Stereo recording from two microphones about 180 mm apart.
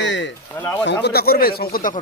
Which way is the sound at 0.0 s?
90° left.